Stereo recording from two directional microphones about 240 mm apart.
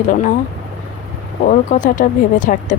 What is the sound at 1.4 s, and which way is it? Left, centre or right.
Speech, left.